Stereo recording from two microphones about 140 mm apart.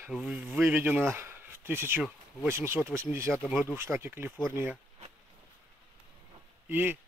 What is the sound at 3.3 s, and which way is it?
Speech, 5° left (ahead or behind).